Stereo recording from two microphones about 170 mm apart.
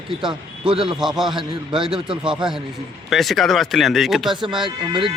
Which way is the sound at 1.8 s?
5° right (ahead or behind).